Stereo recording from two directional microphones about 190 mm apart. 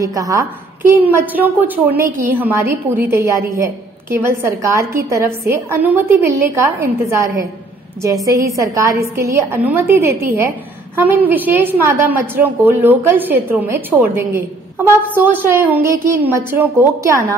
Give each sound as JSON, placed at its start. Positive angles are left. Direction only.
{"t": 0.0, "sound": "a woman's voice", "side_deg": -20}